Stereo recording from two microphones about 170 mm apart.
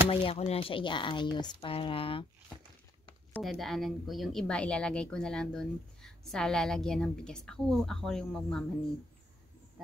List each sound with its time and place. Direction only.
0.1 s speech: 35° left (ahead or behind)
3.3 s a woman's voice: centre (ahead or behind)